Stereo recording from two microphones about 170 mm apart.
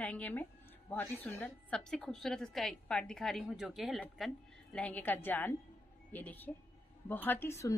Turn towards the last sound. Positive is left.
turn(degrees=15)  # may be behind; listen again after turning